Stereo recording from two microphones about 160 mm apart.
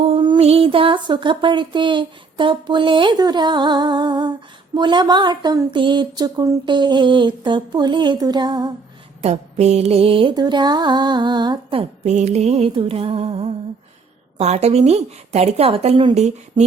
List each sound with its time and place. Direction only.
0.0 s a sound: 35° right (ahead or behind)
9.2 s mantra: 40° right (ahead or behind)
14.3 s a woman's voice: 45° right (ahead or behind)